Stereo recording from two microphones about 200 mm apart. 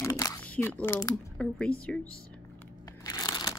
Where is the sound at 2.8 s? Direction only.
20° left (ahead or behind).